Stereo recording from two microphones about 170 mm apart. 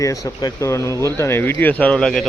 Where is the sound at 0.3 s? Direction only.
20° left (ahead or behind).